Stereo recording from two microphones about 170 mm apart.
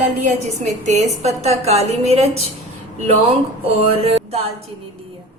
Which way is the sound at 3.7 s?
35° right (ahead or behind).